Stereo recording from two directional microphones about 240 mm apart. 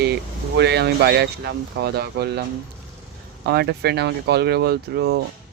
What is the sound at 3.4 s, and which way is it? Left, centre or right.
Speech, right.